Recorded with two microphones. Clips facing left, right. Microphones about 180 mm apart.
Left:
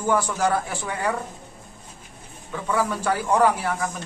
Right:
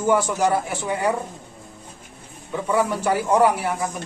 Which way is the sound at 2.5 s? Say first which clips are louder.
Right 3 dB; 15° right (ahead or behind).